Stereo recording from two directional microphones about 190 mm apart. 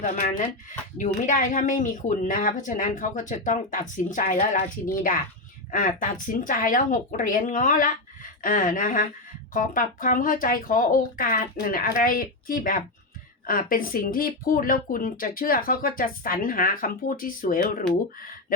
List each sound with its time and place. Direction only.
0.0 s speech: 45° left (ahead or behind)